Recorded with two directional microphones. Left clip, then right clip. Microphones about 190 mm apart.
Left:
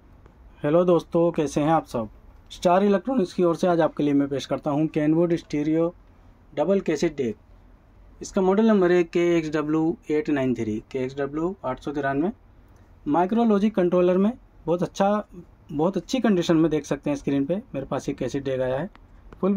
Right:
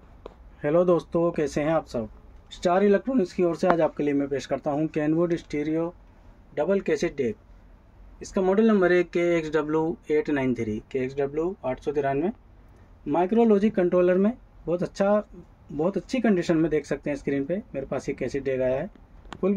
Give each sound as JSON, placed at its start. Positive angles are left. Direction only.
{"t": 0.6, "sound": "speech", "side_deg": 20}
{"t": 8.4, "sound": "speech", "side_deg": 20}
{"t": 18.1, "sound": "speech", "side_deg": -5}
{"t": 18.6, "sound": "speech", "side_deg": 25}